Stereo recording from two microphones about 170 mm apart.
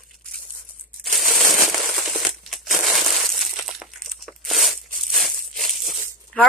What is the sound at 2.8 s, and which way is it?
Crumpling, centre (ahead or behind).